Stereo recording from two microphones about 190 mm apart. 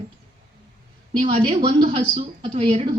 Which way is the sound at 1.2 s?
30° right (ahead or behind).